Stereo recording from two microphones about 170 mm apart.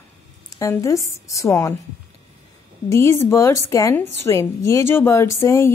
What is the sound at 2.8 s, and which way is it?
A woman's voice, 20° left (ahead or behind).